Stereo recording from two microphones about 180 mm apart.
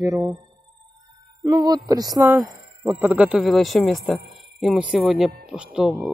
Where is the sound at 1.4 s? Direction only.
20° right (ahead or behind).